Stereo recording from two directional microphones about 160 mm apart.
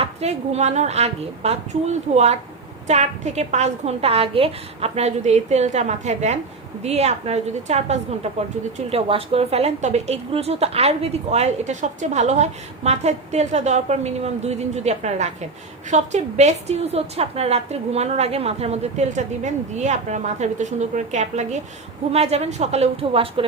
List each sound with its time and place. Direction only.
0.0 s a woman's voice: 40° right (ahead or behind)